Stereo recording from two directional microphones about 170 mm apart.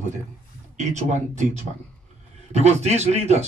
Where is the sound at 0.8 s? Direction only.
45° right (ahead or behind).